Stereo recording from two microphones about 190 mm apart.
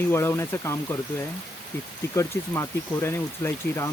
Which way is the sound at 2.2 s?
15° left (ahead or behind).